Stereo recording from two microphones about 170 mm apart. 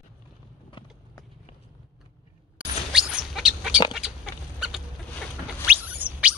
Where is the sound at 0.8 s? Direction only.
30° left (ahead or behind).